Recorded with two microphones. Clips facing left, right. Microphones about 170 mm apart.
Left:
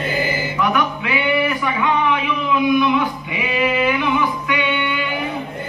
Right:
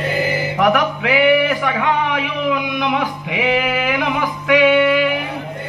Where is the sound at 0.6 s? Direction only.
75° right (ahead or behind).